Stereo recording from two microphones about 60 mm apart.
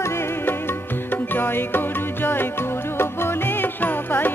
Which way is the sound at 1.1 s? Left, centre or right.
Left.